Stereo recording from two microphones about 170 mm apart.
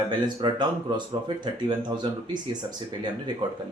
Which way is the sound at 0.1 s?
25° right (ahead or behind).